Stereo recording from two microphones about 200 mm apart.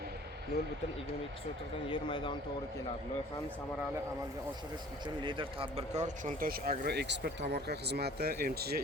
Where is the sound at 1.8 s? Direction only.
25° left (ahead or behind).